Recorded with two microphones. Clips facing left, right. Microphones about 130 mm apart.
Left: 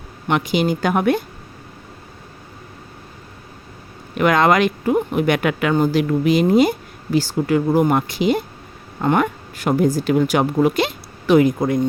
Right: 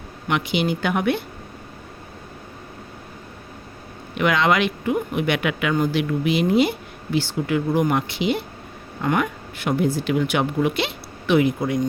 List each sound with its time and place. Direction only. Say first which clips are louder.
0.3 s a woman's voice: left 4 dB; 40° left (ahead or behind)
4.1 s a woman's voice: left 4 dB; 45° left (ahead or behind)